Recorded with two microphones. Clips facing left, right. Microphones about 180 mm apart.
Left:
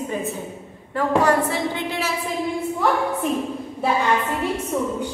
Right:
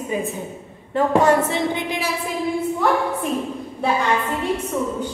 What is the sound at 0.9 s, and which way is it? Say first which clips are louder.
A woman's voice: right 2 dB; 25° right (ahead or behind).